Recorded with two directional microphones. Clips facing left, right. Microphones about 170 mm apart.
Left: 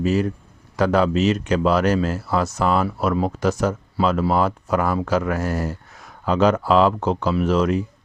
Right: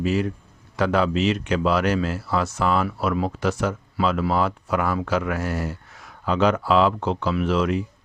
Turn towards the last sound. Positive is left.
turn(degrees=40)  # may be behind; listen again after turning